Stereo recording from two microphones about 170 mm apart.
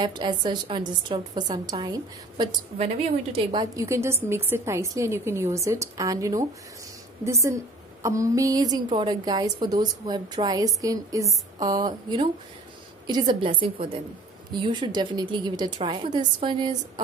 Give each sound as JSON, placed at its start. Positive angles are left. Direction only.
{"t": 0.0, "sound": "a woman's voice", "side_deg": -25}
{"t": 2.8, "sound": "a woman's voice", "side_deg": -40}
{"t": 3.5, "sound": "a woman's voice", "side_deg": -20}